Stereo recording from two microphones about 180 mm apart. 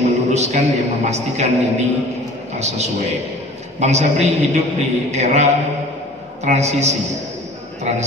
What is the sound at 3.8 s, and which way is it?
Speech, 40° right (ahead or behind).